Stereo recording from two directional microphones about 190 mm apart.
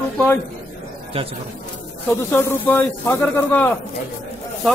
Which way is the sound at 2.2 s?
10° left (ahead or behind).